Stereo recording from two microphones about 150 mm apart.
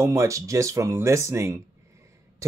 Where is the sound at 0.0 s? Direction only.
20° right (ahead or behind).